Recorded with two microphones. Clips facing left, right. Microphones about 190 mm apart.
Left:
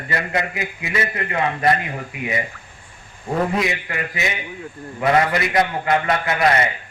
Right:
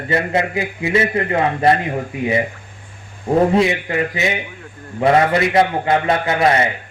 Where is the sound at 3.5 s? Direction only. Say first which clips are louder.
Right 7 dB; 30° right (ahead or behind).